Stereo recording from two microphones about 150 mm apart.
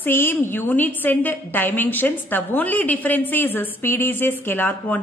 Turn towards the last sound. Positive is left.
turn(degrees=10)  # may be behind; listen again after turning